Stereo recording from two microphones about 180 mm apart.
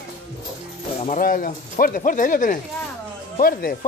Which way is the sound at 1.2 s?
50° left (ahead or behind).